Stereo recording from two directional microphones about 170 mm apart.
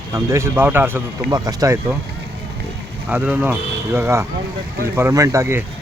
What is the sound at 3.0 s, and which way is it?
Speech, 10° right (ahead or behind).